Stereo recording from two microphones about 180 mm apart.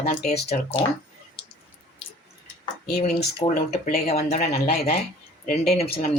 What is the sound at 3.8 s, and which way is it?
Speech, 55° left (ahead or behind).